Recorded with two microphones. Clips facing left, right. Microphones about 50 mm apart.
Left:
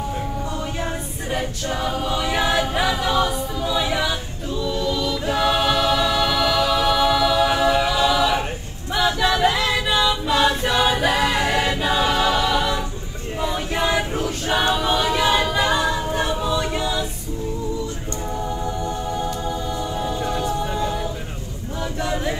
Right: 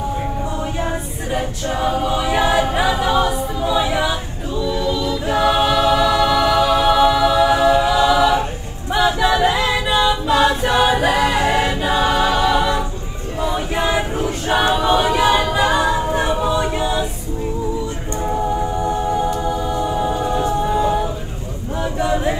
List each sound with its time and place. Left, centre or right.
1.3 s a capella: centre
2.7 s music: centre
4.7 s choir: right
6.4 s music: right
7.5 s a capella: centre
8.9 s singing: centre
9.5 s a capella: centre
10.2 s choir: centre
10.7 s a capella: centre
11.8 s choir: centre
14.6 s a capella: centre
18.3 s music: centre
20.7 s a sound: right